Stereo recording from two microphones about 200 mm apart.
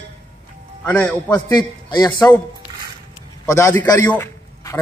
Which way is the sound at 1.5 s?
20° left (ahead or behind).